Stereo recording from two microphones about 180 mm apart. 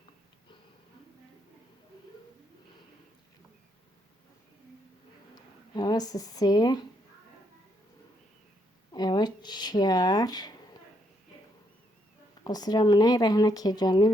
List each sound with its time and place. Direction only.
5.3 s speech: 20° left (ahead or behind)
8.9 s a sound: 25° left (ahead or behind)
12.5 s speech: 20° left (ahead or behind)